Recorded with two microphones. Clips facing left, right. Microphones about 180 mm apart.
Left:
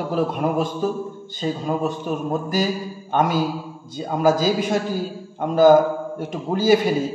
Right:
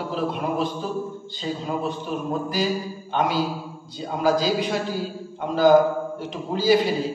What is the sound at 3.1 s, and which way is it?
A man's voice, 45° left (ahead or behind).